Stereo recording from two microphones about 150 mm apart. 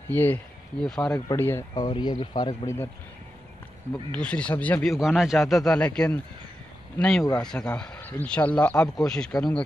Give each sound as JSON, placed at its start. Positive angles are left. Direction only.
{"t": 0.1, "sound": "speech", "side_deg": 10}
{"t": 1.3, "sound": "speech", "side_deg": 15}
{"t": 1.8, "sound": "speech", "side_deg": 30}
{"t": 2.6, "sound": "speech", "side_deg": 20}
{"t": 3.9, "sound": "a man's voice", "side_deg": 5}